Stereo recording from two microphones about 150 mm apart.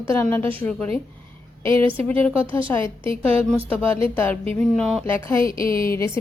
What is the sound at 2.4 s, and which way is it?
A woman's voice, 35° right (ahead or behind).